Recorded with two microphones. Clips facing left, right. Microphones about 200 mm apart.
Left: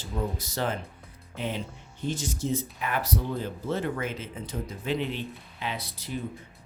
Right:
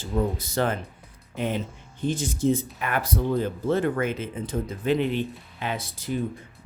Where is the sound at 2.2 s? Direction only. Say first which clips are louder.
Right 9 dB; 50° right (ahead or behind).